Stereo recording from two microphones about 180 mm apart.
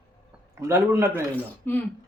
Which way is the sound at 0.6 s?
15° right (ahead or behind).